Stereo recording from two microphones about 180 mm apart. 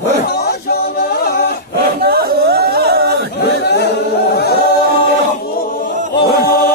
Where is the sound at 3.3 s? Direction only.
65° left (ahead or behind).